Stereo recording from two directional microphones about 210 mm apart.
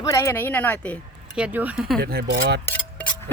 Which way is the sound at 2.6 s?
5° left (ahead or behind).